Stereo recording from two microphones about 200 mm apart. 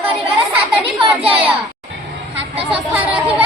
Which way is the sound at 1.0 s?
25° right (ahead or behind).